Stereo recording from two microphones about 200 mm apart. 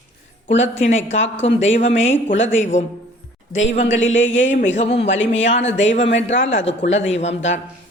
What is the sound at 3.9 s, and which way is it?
Speech, 70° left (ahead or behind).